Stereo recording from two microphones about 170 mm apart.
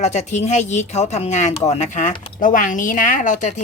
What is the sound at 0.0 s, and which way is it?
Speech, 40° left (ahead or behind).